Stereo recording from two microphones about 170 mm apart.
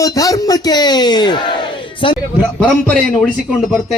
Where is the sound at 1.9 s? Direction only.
30° left (ahead or behind).